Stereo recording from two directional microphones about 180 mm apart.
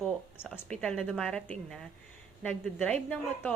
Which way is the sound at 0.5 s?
5° left (ahead or behind).